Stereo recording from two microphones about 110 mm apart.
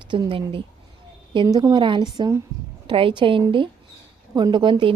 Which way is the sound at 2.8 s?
50° right (ahead or behind).